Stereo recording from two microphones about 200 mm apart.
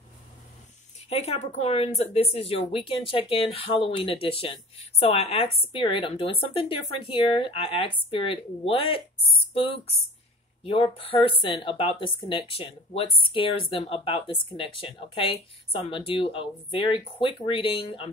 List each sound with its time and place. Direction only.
1.0 s speech: 30° left (ahead or behind)